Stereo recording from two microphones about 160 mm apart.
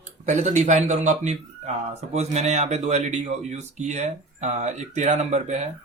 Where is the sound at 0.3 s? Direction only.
45° right (ahead or behind).